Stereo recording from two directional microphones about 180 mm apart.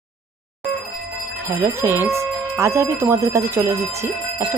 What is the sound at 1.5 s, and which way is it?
Speech, 15° right (ahead or behind).